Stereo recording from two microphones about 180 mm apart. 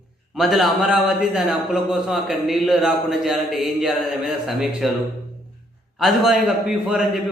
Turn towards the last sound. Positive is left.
turn(degrees=-5)  # may be behind; listen again after turning